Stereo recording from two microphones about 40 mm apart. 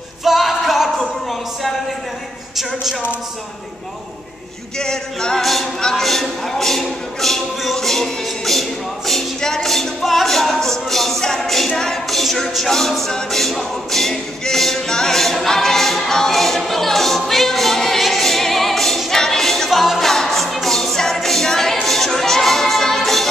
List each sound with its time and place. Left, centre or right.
0.2 s a sound: centre
2.5 s a woman's voice: centre
4.7 s male singing: centre
5.4 s a capella: centre
5.8 s male singing: centre
6.0 s speech: centre
13.1 s a capella: centre
16.0 s music: centre
18.0 s a capella: centre
19.8 s music: centre